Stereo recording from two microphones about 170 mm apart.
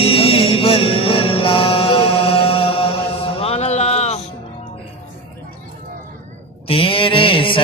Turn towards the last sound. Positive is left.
turn(degrees=30)  # may be behind; listen again after turning